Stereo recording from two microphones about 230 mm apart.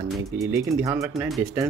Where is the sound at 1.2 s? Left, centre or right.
Centre.